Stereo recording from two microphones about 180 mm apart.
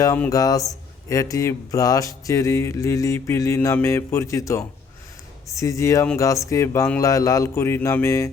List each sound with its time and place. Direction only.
0.3 s speech: 20° left (ahead or behind)